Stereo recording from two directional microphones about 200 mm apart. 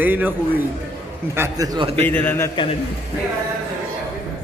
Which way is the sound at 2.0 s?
10° left (ahead or behind).